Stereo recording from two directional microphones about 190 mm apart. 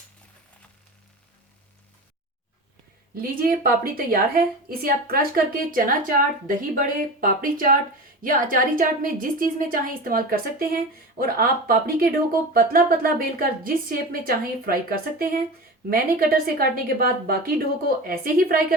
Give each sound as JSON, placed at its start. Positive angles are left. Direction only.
{"t": 3.2, "sound": "speech", "side_deg": -50}